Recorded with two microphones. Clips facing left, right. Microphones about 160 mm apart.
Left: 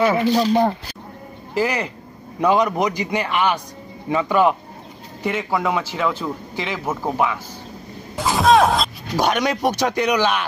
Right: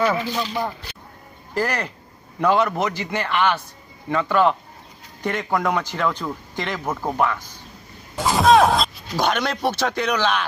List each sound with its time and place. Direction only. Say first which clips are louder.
0.3 s speech: left 9 dB; 40° left (ahead or behind)
1.5 s speech: left 3 dB; 10° left (ahead or behind)
8.2 s music: even; centre (ahead or behind)
9.1 s speech: left 3 dB; 10° left (ahead or behind)